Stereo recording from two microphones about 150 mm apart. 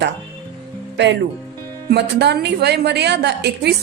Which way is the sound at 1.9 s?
90° right.